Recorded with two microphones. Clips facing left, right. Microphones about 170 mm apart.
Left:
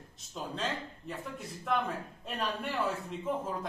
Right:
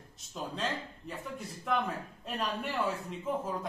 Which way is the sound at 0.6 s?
Centre (ahead or behind).